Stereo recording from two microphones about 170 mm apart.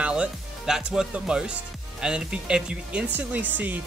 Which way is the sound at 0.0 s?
5° right (ahead or behind).